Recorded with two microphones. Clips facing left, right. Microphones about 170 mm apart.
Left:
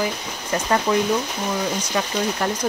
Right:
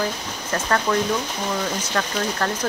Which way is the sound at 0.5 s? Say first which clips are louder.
Left 2 dB; 15° left (ahead or behind).